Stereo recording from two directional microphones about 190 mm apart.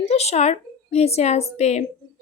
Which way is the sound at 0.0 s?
35° left (ahead or behind).